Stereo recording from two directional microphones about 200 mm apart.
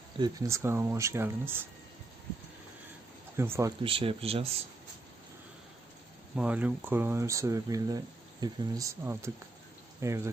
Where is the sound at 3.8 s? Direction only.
25° right (ahead or behind).